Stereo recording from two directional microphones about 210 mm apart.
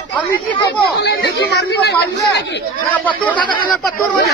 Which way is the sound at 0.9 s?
50° left (ahead or behind).